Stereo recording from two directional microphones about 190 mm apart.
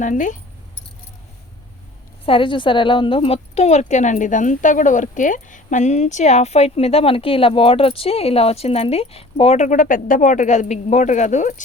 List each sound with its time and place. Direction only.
0.0 s speech: 40° left (ahead or behind)
2.2 s speech: 30° left (ahead or behind)